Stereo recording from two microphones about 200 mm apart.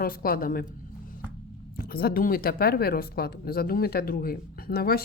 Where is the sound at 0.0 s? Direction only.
45° left (ahead or behind).